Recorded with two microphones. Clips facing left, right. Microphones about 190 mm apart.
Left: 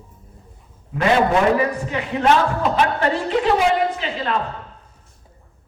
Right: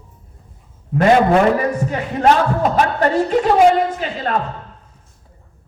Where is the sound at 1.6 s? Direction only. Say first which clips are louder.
Right 2 dB; 45° right (ahead or behind).